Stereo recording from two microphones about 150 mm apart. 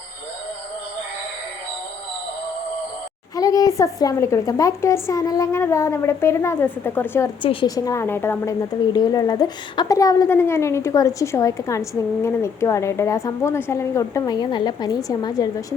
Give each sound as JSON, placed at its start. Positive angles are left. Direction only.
{"t": 3.3, "sound": "a woman's voice", "side_deg": 25}
{"t": 7.4, "sound": "a woman's voice", "side_deg": 35}
{"t": 7.8, "sound": "a woman's voice", "side_deg": 20}
{"t": 8.9, "sound": "a woman's voice", "side_deg": 25}